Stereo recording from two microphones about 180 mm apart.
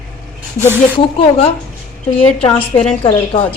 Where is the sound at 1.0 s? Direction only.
30° left (ahead or behind).